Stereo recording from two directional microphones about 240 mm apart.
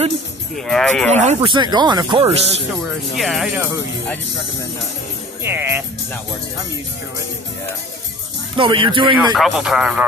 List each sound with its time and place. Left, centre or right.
0.7 s speech: centre
1.1 s speech: right
2.7 s speech: centre
5.4 s speech: centre
8.5 s speech: right
9.3 s speech: centre